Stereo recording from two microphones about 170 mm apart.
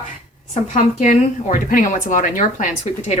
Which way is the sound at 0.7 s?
45° left (ahead or behind).